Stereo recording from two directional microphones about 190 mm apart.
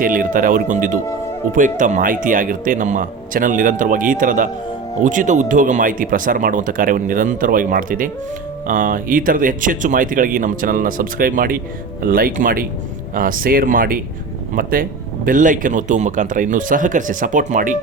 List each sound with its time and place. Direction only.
0.0 s speech: 45° right (ahead or behind)